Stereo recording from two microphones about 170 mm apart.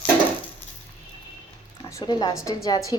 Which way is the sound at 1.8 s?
20° left (ahead or behind).